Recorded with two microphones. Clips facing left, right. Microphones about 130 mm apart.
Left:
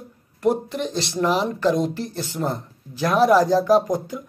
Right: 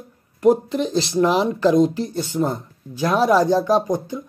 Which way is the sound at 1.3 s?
40° right (ahead or behind).